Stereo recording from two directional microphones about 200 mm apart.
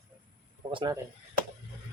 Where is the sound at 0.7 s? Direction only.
20° right (ahead or behind).